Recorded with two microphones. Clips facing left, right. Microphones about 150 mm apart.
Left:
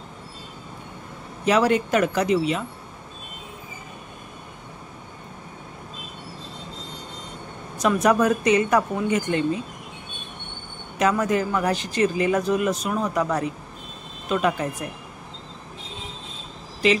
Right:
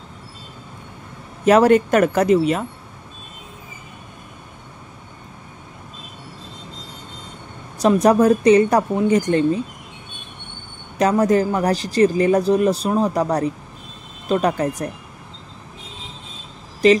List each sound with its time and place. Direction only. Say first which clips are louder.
1.4 s speech: right 7 dB; 50° right (ahead or behind)
7.8 s speech: right 5 dB; 35° right (ahead or behind)
11.0 s speech: right 5 dB; 35° right (ahead or behind)
16.8 s speech: right 7 dB; 40° right (ahead or behind)